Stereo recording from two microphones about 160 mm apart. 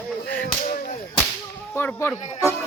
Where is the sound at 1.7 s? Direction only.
15° left (ahead or behind).